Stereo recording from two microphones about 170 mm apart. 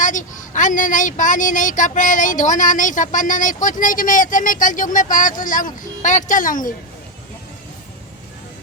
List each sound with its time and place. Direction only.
0.0 s speech: 50° left (ahead or behind)